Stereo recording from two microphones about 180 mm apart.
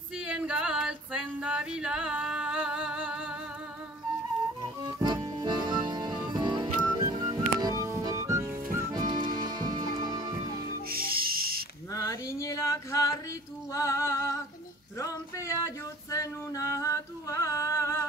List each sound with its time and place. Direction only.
0.2 s female singing: 5° right (ahead or behind)
4.9 s music: 20° right (ahead or behind)
9.3 s music: 50° right (ahead or behind)
9.6 s music: 20° right (ahead or behind)
10.9 s music: 55° right (ahead or behind)
11.9 s a sound: 15° left (ahead or behind)
13.7 s female singing: 15° left (ahead or behind)
15.0 s male singing: 15° left (ahead or behind)